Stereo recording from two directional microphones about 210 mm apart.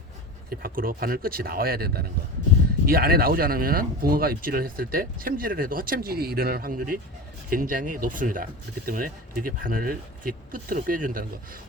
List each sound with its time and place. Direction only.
0.5 s speech: 45° right (ahead or behind)